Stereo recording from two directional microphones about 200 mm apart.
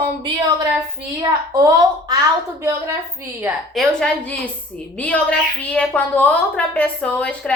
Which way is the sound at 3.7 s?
Centre (ahead or behind).